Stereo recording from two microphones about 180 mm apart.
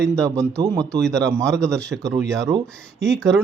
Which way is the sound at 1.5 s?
5° left (ahead or behind).